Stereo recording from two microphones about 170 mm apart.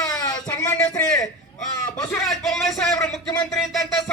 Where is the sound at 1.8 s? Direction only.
5° left (ahead or behind).